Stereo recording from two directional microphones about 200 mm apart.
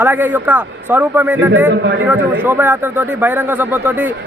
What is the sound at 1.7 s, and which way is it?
Speech, 60° right (ahead or behind).